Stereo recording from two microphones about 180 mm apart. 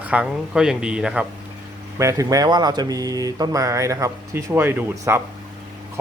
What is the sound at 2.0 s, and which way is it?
Speech, 15° right (ahead or behind).